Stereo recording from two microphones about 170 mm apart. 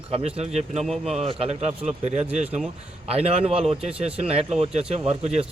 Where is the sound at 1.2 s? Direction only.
35° right (ahead or behind).